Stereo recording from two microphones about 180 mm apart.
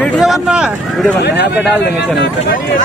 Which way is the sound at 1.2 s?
70° left (ahead or behind).